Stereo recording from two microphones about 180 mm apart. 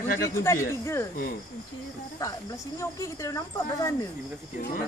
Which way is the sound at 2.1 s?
20° left (ahead or behind).